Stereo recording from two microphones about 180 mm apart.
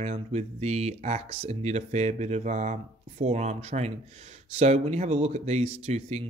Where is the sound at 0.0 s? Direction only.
35° right (ahead or behind).